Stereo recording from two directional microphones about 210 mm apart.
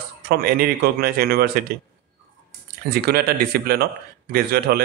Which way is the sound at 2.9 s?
50° right (ahead or behind).